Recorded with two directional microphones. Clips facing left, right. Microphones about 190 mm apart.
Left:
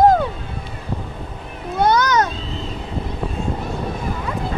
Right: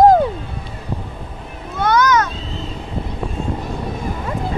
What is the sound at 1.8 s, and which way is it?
Cat, 35° left (ahead or behind).